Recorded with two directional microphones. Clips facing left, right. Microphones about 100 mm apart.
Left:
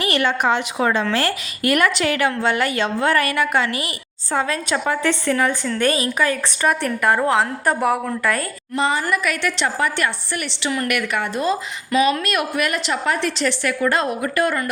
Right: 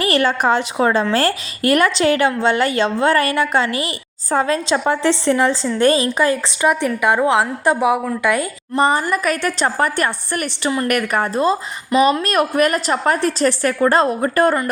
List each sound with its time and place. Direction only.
0.0 s a woman's voice: 35° right (ahead or behind)
6.6 s a woman's voice: 10° right (ahead or behind)
7.3 s a woman's voice: 25° right (ahead or behind)
7.8 s a woman's voice: 10° right (ahead or behind)
8.7 s a woman's voice: 50° right (ahead or behind)